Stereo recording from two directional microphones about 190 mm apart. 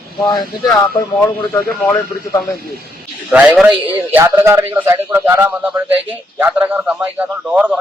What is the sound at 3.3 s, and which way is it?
A man's voice, 10° right (ahead or behind).